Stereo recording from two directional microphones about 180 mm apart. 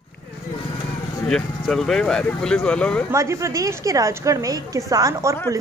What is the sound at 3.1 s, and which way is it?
A woman's voice, 15° right (ahead or behind).